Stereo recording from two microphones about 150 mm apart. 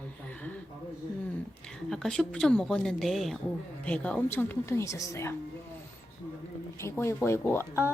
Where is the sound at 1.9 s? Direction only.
5° left (ahead or behind).